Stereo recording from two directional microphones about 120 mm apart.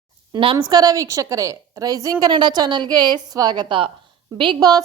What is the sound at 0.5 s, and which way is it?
A woman's voice, 35° right (ahead or behind).